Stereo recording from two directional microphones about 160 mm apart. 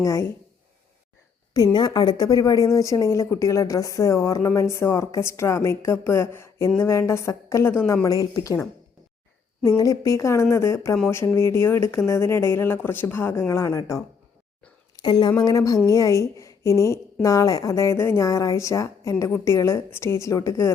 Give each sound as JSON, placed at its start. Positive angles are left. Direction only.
{"t": 0.0, "sound": "a woman's voice", "side_deg": 20}
{"t": 1.5, "sound": "a woman's voice", "side_deg": 25}
{"t": 9.6, "sound": "a woman's voice", "side_deg": 20}